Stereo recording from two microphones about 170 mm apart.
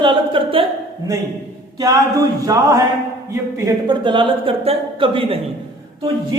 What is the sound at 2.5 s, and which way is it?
Speech, 20° right (ahead or behind).